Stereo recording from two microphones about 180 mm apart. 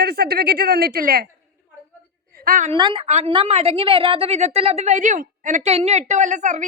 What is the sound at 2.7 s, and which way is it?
A woman's voice, 25° right (ahead or behind).